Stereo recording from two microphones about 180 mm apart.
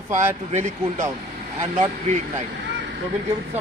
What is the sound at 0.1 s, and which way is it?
Speech, 40° right (ahead or behind).